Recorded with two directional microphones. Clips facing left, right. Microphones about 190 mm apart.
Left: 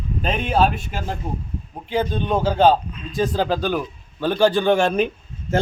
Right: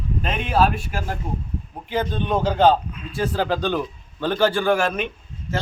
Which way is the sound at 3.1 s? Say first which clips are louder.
Left 2 dB; 15° left (ahead or behind).